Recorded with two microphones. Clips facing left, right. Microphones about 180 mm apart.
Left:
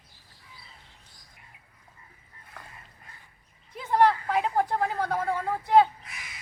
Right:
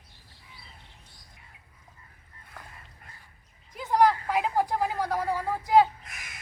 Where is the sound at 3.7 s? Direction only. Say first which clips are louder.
Even; centre (ahead or behind).